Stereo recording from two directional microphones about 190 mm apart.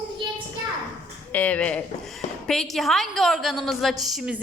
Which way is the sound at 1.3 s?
10° left (ahead or behind).